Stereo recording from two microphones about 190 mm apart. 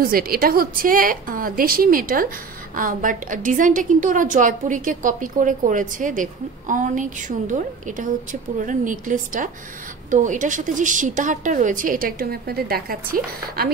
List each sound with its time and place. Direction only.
0.0 s a woman's voice: 50° right (ahead or behind)